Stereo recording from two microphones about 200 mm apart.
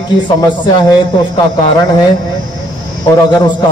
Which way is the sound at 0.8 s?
25° left (ahead or behind).